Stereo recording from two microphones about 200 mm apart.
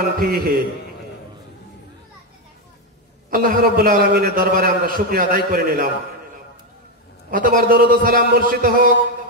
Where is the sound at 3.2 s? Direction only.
45° right (ahead or behind).